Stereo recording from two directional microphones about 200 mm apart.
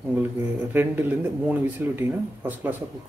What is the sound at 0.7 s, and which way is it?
Speech, 10° right (ahead or behind).